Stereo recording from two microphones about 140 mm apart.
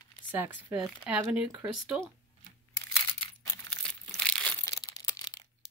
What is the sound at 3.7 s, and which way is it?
Crumpling, 5° left (ahead or behind).